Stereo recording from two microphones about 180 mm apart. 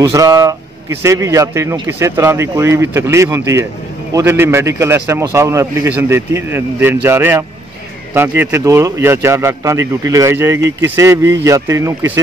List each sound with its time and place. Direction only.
0.0 s a man's voice: 20° right (ahead or behind)